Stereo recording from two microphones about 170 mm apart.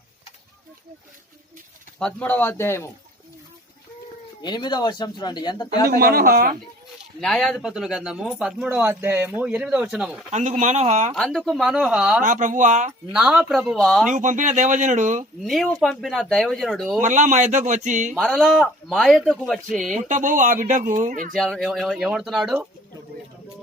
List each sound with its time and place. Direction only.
2.0 s speech: 5° left (ahead or behind)
4.4 s speech: 25° left (ahead or behind)
5.8 s speech: 60° right (ahead or behind)
7.2 s speech: 5° left (ahead or behind)
10.3 s speech: 45° right (ahead or behind)
11.1 s speech: centre (ahead or behind)
12.2 s speech: 50° right (ahead or behind)
13.1 s speech: 5° right (ahead or behind)
14.1 s speech: 45° right (ahead or behind)
15.4 s speech: centre (ahead or behind)
17.0 s speech: 45° right (ahead or behind)
18.1 s speech: 5° left (ahead or behind)
20.1 s speech: 50° right (ahead or behind)
21.3 s speech: centre (ahead or behind)